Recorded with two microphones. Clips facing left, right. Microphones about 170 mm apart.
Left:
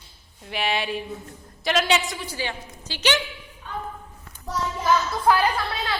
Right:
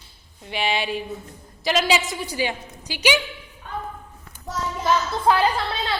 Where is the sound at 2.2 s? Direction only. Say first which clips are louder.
Right 5 dB; 15° right (ahead or behind).